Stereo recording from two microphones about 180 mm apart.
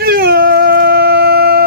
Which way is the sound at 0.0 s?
55° right (ahead or behind).